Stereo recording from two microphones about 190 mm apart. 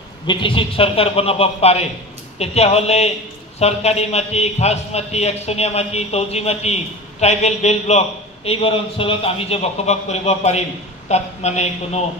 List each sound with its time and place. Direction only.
0.3 s a man's voice: 25° left (ahead or behind)